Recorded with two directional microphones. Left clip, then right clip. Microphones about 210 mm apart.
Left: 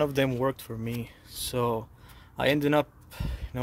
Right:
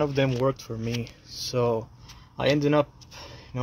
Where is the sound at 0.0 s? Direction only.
30° left (ahead or behind).